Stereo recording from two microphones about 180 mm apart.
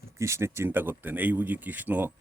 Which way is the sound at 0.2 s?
15° right (ahead or behind).